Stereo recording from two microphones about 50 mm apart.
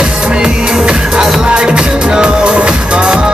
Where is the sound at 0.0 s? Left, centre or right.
Centre.